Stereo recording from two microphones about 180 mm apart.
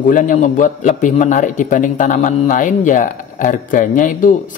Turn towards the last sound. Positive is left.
turn(degrees=45)  # may be behind; listen again after turning